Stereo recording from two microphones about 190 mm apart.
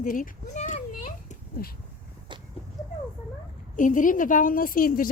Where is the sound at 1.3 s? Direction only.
50° left (ahead or behind).